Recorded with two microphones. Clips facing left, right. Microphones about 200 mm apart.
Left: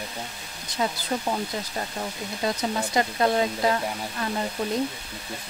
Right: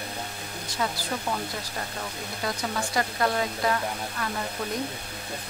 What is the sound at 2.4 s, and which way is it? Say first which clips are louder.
Speech: left 4 dB; 20° left (ahead or behind).